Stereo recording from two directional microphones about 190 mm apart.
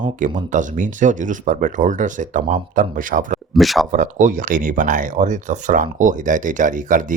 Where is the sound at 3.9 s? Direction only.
45° right (ahead or behind).